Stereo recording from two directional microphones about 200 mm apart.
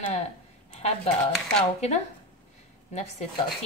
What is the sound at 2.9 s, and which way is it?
Speech, 35° left (ahead or behind).